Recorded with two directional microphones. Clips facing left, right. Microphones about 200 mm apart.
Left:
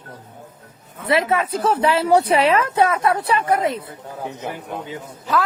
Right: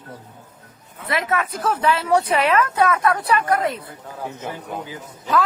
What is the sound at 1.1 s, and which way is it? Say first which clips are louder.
A woman's voice: left 4 dB; 30° left (ahead or behind).